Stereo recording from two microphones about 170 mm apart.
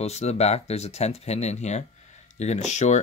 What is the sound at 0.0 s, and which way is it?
Speech, 40° left (ahead or behind).